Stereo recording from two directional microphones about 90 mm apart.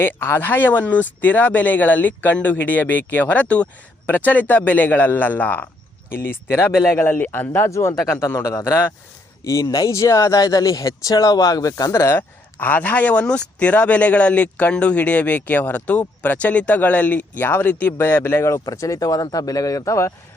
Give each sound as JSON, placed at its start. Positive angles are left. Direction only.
{"t": 0.0, "sound": "speech", "side_deg": 25}
{"t": 18.6, "sound": "speech", "side_deg": 40}